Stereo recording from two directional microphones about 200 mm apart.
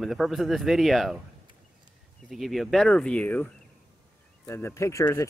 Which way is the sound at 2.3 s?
Centre (ahead or behind).